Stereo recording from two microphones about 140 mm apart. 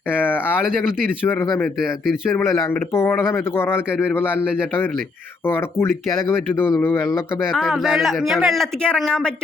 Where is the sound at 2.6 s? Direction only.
20° left (ahead or behind).